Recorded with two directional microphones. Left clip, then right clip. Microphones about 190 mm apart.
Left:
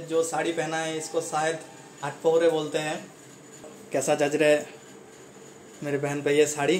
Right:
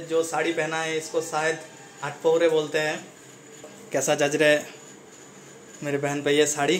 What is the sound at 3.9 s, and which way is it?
Speech, centre (ahead or behind).